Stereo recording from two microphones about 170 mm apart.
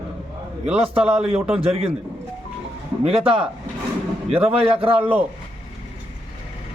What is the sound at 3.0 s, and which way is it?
A man's voice, 35° right (ahead or behind).